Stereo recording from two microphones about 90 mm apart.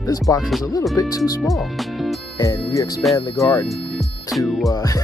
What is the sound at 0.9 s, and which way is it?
Speech, 40° left (ahead or behind).